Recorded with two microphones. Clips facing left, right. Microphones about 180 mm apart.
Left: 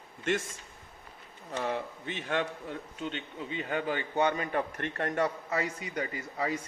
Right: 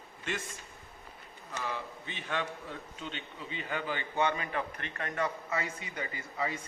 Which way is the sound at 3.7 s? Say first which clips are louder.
Left 4 dB; 50° left (ahead or behind).